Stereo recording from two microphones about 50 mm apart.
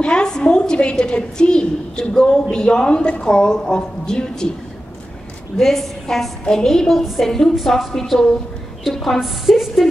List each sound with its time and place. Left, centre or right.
0.0 s a woman's voice: centre
5.6 s a woman's voice: centre
7.0 s a woman's voice: centre
7.2 s a woman's voice: centre